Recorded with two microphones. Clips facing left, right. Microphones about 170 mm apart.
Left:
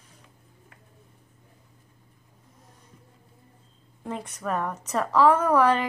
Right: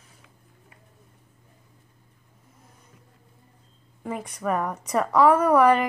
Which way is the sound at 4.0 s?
10° right (ahead or behind).